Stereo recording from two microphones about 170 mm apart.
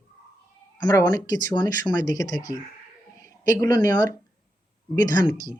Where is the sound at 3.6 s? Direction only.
20° left (ahead or behind).